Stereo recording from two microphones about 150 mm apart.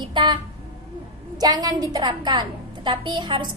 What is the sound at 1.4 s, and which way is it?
A woman's voice, 25° right (ahead or behind).